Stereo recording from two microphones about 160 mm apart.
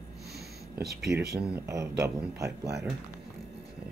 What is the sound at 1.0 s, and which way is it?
Speech, 90° right.